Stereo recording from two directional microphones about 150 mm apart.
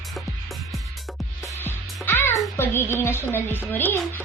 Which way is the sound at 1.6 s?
15° left (ahead or behind).